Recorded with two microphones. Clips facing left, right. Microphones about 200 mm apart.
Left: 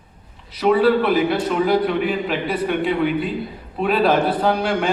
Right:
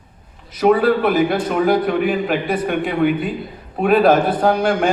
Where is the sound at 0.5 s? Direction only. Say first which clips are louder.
Right 1 dB; 50° right (ahead or behind).